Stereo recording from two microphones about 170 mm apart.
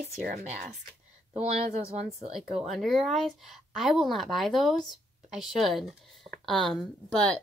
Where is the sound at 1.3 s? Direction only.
35° right (ahead or behind).